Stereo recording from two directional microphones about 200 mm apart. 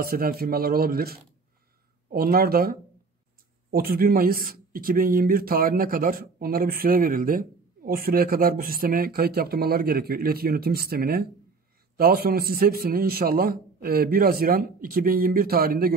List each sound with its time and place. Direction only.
0.0 s speech: 50° right (ahead or behind)